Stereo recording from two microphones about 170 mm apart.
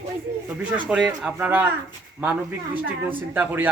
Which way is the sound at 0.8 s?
5° right (ahead or behind).